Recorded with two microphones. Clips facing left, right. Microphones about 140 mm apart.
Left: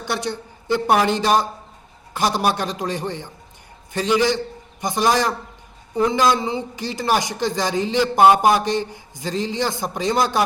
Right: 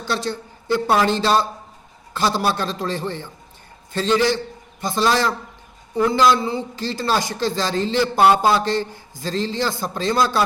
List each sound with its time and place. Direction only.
0.0 s a woman's voice: 20° left (ahead or behind)